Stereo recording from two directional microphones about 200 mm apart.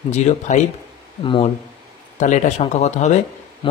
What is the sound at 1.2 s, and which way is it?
Speech, 25° left (ahead or behind).